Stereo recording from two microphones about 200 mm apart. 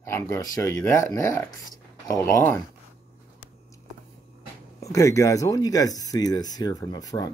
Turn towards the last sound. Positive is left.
turn(degrees=20)  # may be behind; listen again after turning